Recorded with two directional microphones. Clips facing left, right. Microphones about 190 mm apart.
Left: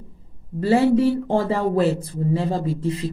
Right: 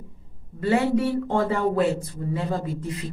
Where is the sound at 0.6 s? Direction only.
30° left (ahead or behind).